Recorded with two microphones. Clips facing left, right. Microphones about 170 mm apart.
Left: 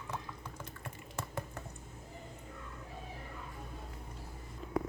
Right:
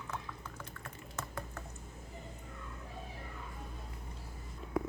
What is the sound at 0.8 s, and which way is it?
Typing, 15° left (ahead or behind).